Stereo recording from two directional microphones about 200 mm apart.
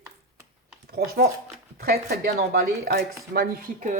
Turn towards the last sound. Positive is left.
turn(degrees=-45)  # may be behind; listen again after turning